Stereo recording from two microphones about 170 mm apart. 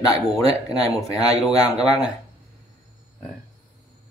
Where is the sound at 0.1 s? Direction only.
20° left (ahead or behind).